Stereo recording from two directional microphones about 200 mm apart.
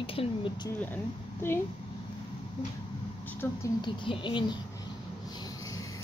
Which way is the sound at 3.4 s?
10° left (ahead or behind).